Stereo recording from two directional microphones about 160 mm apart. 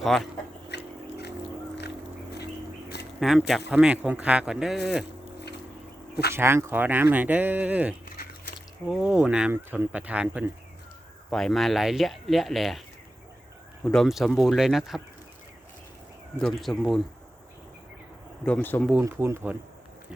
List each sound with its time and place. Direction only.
0.0 s speech: centre (ahead or behind)
0.7 s chewing: 90° left
3.2 s speech: centre (ahead or behind)
6.3 s speech: 15° right (ahead or behind)
8.1 s biting: 70° left (ahead or behind)
8.9 s speech: 5° right (ahead or behind)
11.3 s speech: centre (ahead or behind)
13.8 s speech: centre (ahead or behind)
16.4 s speech: centre (ahead or behind)
18.4 s speech: 10° left (ahead or behind)
18.9 s speech: 15° right (ahead or behind)